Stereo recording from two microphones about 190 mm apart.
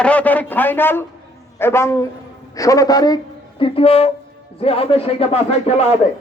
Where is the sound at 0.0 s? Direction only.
5° left (ahead or behind).